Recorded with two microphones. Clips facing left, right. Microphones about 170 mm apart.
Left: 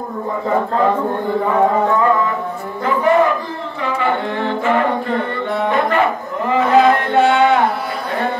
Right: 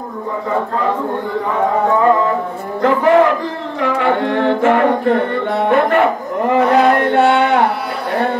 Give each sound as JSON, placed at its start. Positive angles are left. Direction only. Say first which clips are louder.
{"t": 2.8, "sound": "speech", "louder": "right 3 dB", "side_deg": -75}
{"t": 3.8, "sound": "singing", "louder": "right 4 dB", "side_deg": -70}
{"t": 5.7, "sound": "a sound", "louder": "right 4 dB", "side_deg": -60}